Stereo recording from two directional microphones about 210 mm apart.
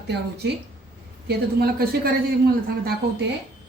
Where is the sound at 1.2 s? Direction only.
45° right (ahead or behind).